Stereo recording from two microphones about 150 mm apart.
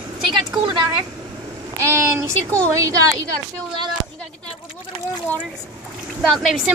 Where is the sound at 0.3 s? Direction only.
30° right (ahead or behind).